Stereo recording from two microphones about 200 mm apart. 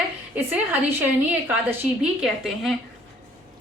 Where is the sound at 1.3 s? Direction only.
5° right (ahead or behind).